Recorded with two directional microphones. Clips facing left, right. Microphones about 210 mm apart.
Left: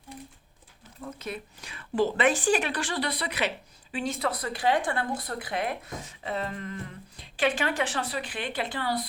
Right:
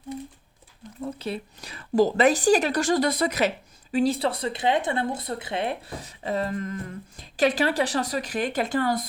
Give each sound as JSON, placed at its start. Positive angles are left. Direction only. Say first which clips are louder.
{"t": 1.0, "sound": "speech", "louder": "right 6 dB", "side_deg": -30}